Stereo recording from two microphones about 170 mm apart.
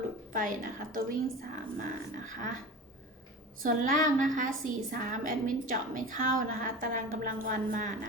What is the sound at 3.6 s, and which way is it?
A woman's voice, 50° right (ahead or behind).